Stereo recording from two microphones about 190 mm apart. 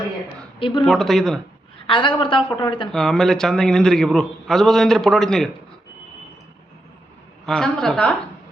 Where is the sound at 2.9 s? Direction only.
5° left (ahead or behind).